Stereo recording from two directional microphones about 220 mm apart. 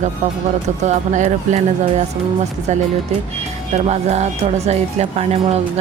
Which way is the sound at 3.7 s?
30° right (ahead or behind).